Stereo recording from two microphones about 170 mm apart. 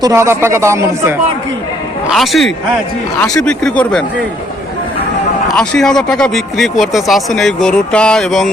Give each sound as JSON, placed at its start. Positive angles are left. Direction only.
{"t": 0.0, "sound": "speech", "side_deg": -15}
{"t": 2.0, "sound": "speech", "side_deg": 0}
{"t": 5.5, "sound": "speech", "side_deg": 5}